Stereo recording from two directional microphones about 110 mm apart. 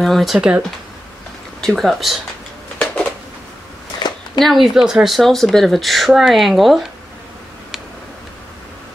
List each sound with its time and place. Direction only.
0.0 s speech: centre (ahead or behind)
4.0 s a sound: 45° left (ahead or behind)
4.4 s speech: centre (ahead or behind)